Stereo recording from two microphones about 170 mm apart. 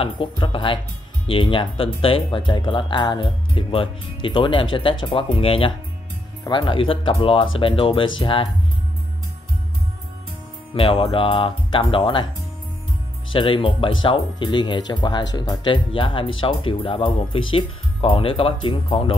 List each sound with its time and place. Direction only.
0.0 s speech: 30° left (ahead or behind)
10.7 s speech: 30° left (ahead or behind)
13.3 s speech: 30° left (ahead or behind)